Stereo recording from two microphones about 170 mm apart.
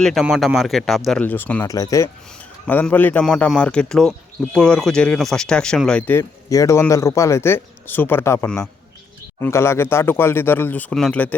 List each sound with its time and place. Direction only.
0.0 s speech: centre (ahead or behind)
1.6 s speech: 20° left (ahead or behind)